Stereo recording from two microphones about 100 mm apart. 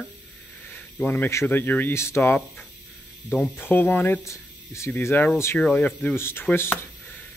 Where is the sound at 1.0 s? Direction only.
20° left (ahead or behind).